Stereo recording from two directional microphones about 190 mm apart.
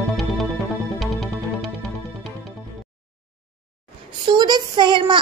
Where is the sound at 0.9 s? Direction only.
Centre (ahead or behind).